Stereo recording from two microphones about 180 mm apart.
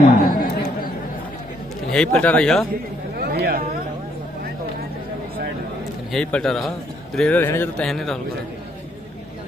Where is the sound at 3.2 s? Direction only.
60° right (ahead or behind).